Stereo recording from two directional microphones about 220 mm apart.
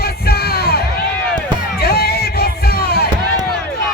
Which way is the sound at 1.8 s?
45° left (ahead or behind).